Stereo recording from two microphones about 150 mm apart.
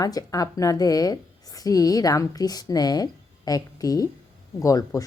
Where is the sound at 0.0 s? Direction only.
25° left (ahead or behind).